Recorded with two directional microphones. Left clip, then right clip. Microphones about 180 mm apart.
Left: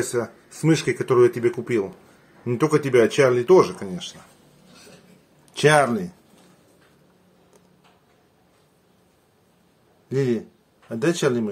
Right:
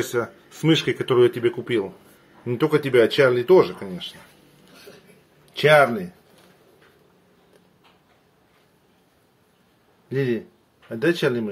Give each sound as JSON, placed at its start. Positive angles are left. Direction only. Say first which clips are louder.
{"t": 0.1, "sound": "speech", "louder": "right 1 dB", "side_deg": 10}
{"t": 2.4, "sound": "speech", "louder": "even", "side_deg": 20}
{"t": 5.5, "sound": "speech", "louder": "right 2 dB", "side_deg": 20}
{"t": 10.0, "sound": "speech", "louder": "left 1 dB", "side_deg": 15}